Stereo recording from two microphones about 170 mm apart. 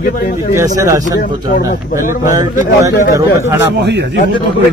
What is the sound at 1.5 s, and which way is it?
Speech, 55° left (ahead or behind).